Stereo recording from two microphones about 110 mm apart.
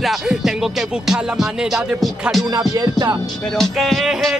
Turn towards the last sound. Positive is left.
turn(degrees=0)  # may be behind; listen again after turning